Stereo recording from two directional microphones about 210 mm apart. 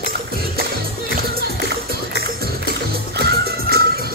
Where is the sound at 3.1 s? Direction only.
50° right (ahead or behind).